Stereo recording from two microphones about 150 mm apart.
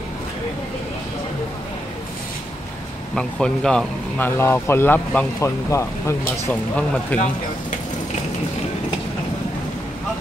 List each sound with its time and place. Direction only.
3.2 s speech: 5° left (ahead or behind)